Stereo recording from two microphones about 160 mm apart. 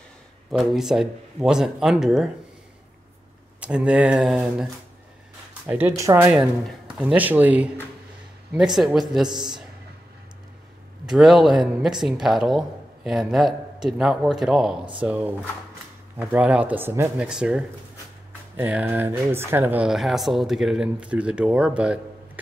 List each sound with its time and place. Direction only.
0.5 s speech: 5° right (ahead or behind)
3.6 s speech: 5° right (ahead or behind)
5.7 s speech: 15° right (ahead or behind)
9.3 s speech: 25° right (ahead or behind)
11.1 s speech: 5° right (ahead or behind)